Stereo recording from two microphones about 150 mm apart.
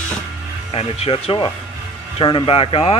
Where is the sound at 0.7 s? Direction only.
40° left (ahead or behind).